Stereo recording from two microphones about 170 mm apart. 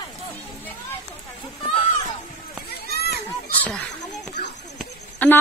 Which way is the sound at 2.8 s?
70° left (ahead or behind).